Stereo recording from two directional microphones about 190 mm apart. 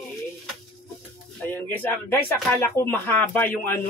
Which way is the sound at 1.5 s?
10° left (ahead or behind).